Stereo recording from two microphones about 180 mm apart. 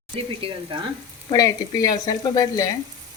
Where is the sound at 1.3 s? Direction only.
20° left (ahead or behind).